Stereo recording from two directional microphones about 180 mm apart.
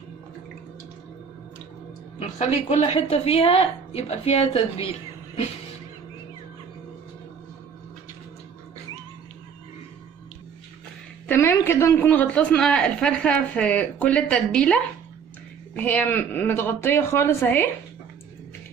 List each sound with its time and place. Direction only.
2.1 s a woman's voice: 35° left (ahead or behind)
11.2 s a man's voice: 10° left (ahead or behind)